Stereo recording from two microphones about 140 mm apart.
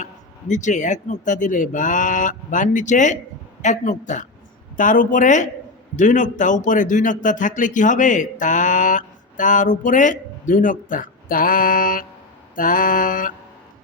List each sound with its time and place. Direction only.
0.0 s a man's voice: 60° left (ahead or behind)
4.8 s mantra: 70° left (ahead or behind)
6.0 s a man's voice: 65° left (ahead or behind); by 12.0 s 80° left
12.5 s mantra: 75° left (ahead or behind)